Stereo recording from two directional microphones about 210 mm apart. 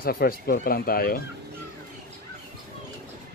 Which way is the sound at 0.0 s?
45° left (ahead or behind).